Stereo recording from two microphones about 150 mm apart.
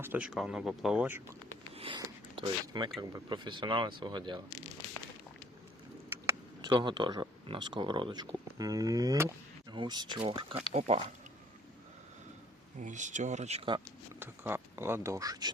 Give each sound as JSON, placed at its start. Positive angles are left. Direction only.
{"t": 0.0, "sound": "speech", "side_deg": -10}
{"t": 1.7, "sound": "a sound", "side_deg": -40}
{"t": 2.3, "sound": "speech", "side_deg": -35}
{"t": 6.6, "sound": "speech", "side_deg": -30}
{"t": 12.8, "sound": "speech", "side_deg": -55}
{"t": 14.2, "sound": "speech", "side_deg": -15}